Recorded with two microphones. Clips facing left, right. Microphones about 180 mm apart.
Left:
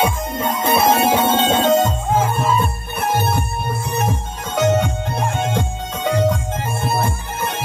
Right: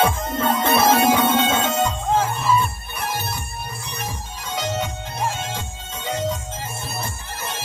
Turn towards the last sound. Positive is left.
turn(degrees=60)  # may be behind; listen again after turning